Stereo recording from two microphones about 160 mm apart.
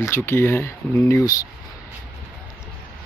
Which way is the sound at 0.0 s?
15° left (ahead or behind).